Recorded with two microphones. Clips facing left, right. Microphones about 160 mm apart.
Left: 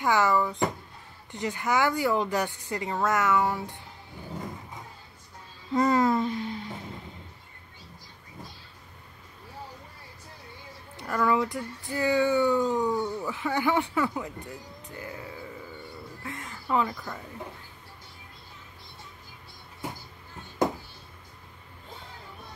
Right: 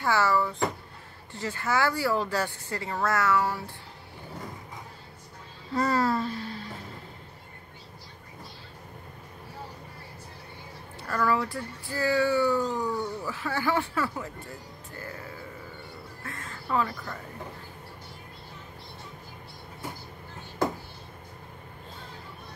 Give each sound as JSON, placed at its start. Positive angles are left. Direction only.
{"t": 0.0, "sound": "a woman's voice", "side_deg": 15}
{"t": 5.7, "sound": "speech", "side_deg": 20}
{"t": 11.0, "sound": "speech", "side_deg": 20}
{"t": 16.2, "sound": "a sound", "side_deg": 20}